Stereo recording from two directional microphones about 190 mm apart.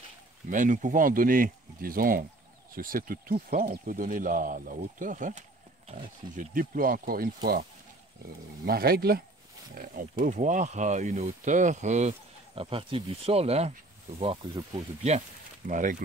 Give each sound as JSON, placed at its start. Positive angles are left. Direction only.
{"t": 0.5, "sound": "speech", "side_deg": -45}
{"t": 8.6, "sound": "speech", "side_deg": -55}
{"t": 15.0, "sound": "speech", "side_deg": -40}